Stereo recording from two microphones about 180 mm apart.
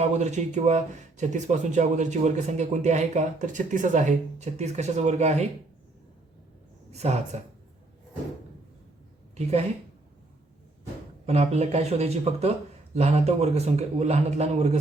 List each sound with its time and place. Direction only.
0.0 s speech: 40° right (ahead or behind)
6.9 s speech: 40° right (ahead or behind)
9.3 s speech: 35° right (ahead or behind)
11.3 s speech: 35° right (ahead or behind)